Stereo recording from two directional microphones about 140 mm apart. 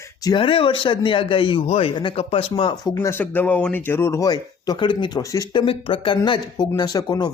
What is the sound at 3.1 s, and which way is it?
Speech, 10° left (ahead or behind).